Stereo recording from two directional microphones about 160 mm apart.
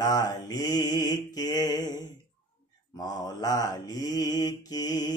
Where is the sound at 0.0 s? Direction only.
25° left (ahead or behind).